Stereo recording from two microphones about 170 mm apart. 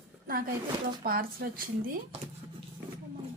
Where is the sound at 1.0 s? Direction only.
60° right (ahead or behind).